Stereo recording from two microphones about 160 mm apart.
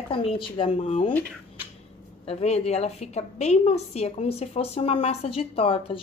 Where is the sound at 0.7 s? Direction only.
45° left (ahead or behind).